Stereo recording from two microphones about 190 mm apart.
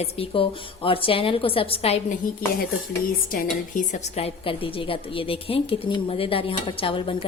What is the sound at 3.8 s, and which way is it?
A woman's voice, 30° left (ahead or behind).